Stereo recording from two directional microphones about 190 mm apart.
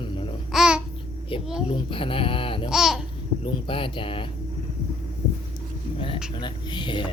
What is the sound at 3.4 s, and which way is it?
Speech, 25° left (ahead or behind).